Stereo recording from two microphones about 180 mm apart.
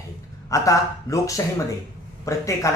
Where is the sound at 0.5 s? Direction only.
20° left (ahead or behind).